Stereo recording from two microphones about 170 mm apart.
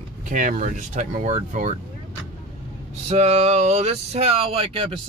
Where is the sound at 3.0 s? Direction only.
40° right (ahead or behind).